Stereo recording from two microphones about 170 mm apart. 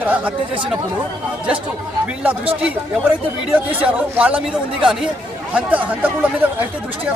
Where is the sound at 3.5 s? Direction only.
5° right (ahead or behind).